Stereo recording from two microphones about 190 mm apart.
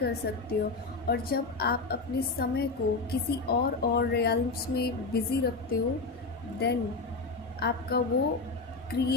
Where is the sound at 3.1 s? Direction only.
55° left (ahead or behind).